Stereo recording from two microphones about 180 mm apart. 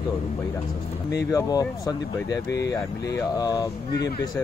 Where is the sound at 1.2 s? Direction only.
20° left (ahead or behind).